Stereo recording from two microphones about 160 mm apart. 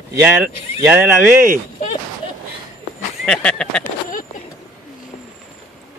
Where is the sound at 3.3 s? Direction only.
5° left (ahead or behind).